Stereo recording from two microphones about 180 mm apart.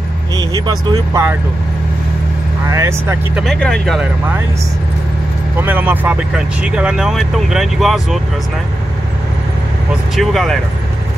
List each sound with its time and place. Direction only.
0.7 s speech: 20° right (ahead or behind)
2.7 s speech: 15° right (ahead or behind)
3.4 s speech: 5° left (ahead or behind)
5.6 s speech: 10° right (ahead or behind)
10.1 s speech: centre (ahead or behind)